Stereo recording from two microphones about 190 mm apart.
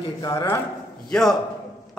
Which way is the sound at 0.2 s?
15° left (ahead or behind).